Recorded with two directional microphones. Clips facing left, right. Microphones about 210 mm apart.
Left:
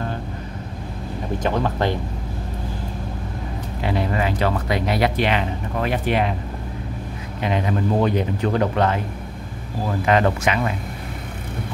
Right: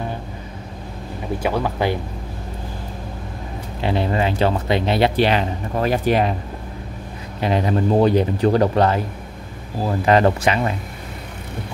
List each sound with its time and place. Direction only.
1.4 s speech: 10° right (ahead or behind)
3.8 s speech: 30° right (ahead or behind)
7.3 s speech: 35° right (ahead or behind)